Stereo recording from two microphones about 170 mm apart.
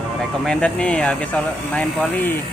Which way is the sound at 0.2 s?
Centre (ahead or behind).